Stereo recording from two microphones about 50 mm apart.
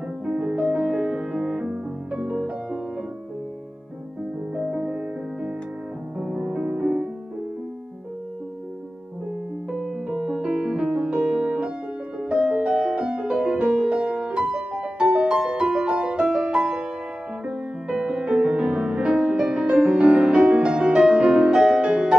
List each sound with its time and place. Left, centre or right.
0.4 s music: right
4.6 s music: right
9.7 s music: centre
15.0 s music: centre
17.5 s music: centre
21.5 s music: centre